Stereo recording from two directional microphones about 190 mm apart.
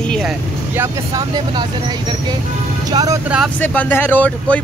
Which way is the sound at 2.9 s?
20° right (ahead or behind).